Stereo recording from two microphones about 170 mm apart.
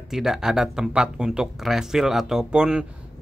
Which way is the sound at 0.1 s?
5° right (ahead or behind).